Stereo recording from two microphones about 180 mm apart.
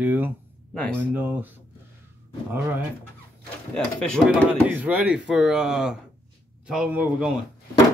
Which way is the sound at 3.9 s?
5° left (ahead or behind).